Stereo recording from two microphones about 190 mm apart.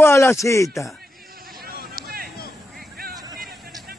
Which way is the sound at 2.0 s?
50° right (ahead or behind).